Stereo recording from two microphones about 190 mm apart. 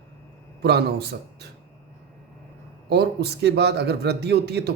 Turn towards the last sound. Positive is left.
turn(degrees=-60)  # may be behind; listen again after turning